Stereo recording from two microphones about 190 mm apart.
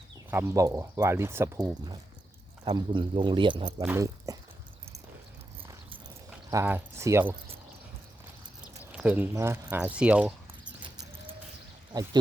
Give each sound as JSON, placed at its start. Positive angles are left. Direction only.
{"t": 0.3, "sound": "speech", "side_deg": -10}
{"t": 3.8, "sound": "speech", "side_deg": -15}
{"t": 6.5, "sound": "speech", "side_deg": -15}
{"t": 8.9, "sound": "speech", "side_deg": -5}
{"t": 10.8, "sound": "a sound", "side_deg": -25}